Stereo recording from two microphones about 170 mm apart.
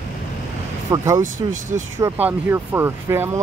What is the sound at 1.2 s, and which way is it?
Speech, 50° right (ahead or behind).